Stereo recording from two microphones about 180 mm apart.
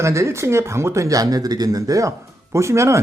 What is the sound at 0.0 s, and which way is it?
Speech, 15° right (ahead or behind).